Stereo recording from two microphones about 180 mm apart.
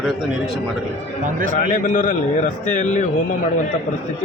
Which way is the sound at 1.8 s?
45° left (ahead or behind).